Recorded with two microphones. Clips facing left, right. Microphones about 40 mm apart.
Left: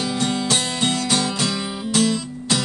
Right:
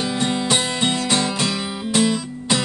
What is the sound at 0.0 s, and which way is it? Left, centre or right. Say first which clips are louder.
Music: right 1 dB; centre.